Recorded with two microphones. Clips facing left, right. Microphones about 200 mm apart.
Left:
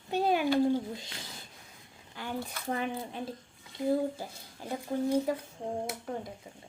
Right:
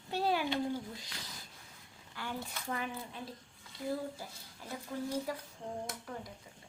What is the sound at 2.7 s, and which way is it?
Cutlery, 25° left (ahead or behind).